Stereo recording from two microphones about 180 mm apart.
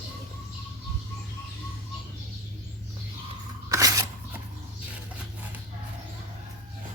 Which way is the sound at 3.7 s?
20° right (ahead or behind).